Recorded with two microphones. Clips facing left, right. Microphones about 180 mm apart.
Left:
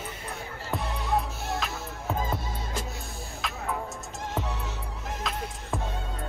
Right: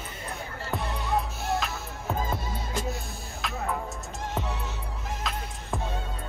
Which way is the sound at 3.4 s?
Centre (ahead or behind).